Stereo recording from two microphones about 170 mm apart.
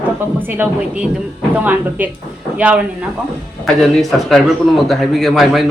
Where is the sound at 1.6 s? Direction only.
10° right (ahead or behind).